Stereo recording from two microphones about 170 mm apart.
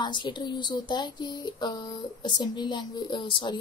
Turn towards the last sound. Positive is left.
turn(degrees=30)  # may be behind; listen again after turning